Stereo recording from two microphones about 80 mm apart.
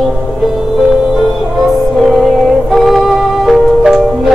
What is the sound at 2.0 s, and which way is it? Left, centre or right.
Music, centre.